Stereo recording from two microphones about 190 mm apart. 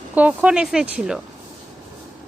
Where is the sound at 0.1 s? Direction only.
10° right (ahead or behind).